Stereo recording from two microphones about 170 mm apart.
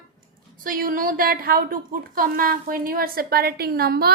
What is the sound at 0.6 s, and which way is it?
A woman's voice, 55° right (ahead or behind).